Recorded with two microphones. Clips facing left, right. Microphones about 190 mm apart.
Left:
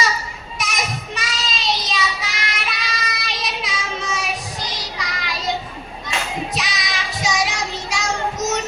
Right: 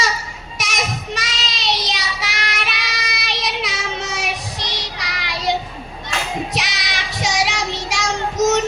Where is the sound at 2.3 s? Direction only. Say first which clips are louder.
Right 2 dB; 70° right (ahead or behind).